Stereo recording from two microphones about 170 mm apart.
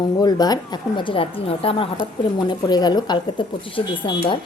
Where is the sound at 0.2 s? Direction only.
25° left (ahead or behind).